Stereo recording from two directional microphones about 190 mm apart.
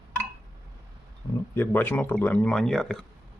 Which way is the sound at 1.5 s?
10° left (ahead or behind).